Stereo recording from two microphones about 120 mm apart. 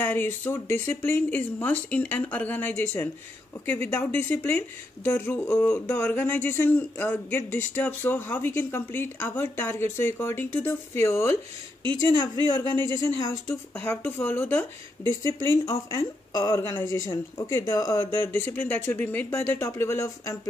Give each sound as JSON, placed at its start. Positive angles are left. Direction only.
{"t": 0.0, "sound": "speech", "side_deg": 15}
{"t": 12.7, "sound": "speech", "side_deg": 25}